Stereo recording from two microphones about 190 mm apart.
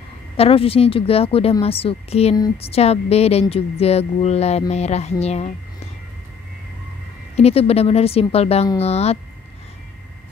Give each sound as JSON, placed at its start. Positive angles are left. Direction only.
{"t": 0.4, "sound": "speech", "side_deg": 30}
{"t": 7.3, "sound": "speech", "side_deg": 30}